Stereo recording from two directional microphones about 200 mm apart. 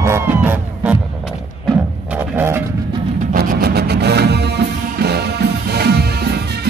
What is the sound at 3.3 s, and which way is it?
Music, 50° right (ahead or behind).